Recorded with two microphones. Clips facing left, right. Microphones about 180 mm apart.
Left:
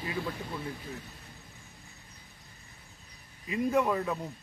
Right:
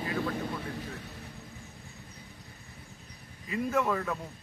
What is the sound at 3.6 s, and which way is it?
Speech, 15° left (ahead or behind).